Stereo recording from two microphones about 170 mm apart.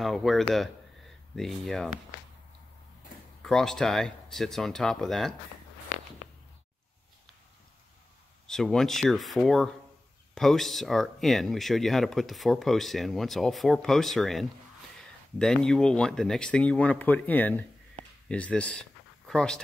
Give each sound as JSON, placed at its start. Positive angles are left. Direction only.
{"t": 0.0, "sound": "speech", "side_deg": 0}
{"t": 3.4, "sound": "speech", "side_deg": 5}
{"t": 8.5, "sound": "speech", "side_deg": 0}